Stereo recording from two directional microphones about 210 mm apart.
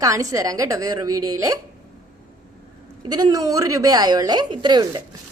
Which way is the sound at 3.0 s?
20° right (ahead or behind).